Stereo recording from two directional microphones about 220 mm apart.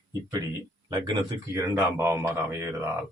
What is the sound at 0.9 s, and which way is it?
A man's voice, 15° right (ahead or behind).